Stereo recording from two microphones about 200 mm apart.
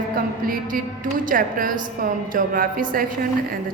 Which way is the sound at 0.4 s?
45° right (ahead or behind).